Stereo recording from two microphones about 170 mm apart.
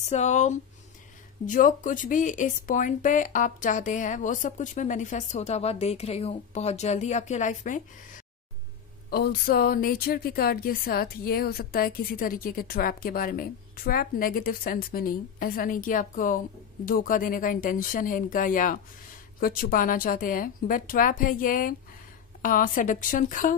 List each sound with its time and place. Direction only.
0.0 s speech: 40° left (ahead or behind)
9.1 s speech: 65° left (ahead or behind); by 23.5 s 50° left (ahead or behind)